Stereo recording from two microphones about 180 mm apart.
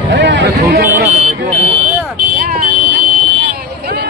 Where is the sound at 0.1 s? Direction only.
75° right (ahead or behind).